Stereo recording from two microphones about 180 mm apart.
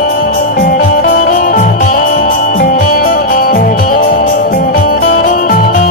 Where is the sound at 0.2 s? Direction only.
50° left (ahead or behind).